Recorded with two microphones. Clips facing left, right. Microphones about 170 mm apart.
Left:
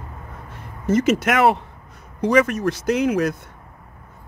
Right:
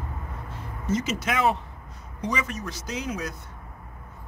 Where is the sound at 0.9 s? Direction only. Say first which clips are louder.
Left 9 dB; 60° left (ahead or behind).